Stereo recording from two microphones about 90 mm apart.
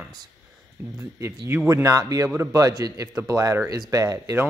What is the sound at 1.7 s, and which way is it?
Speech, 40° right (ahead or behind).